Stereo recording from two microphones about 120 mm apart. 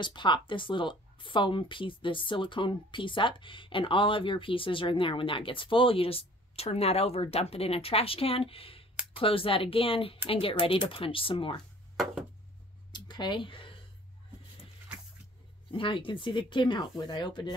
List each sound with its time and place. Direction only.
0.0 s speech: 40° left (ahead or behind)
12.9 s a sound: 40° left (ahead or behind)
15.7 s speech: 45° left (ahead or behind)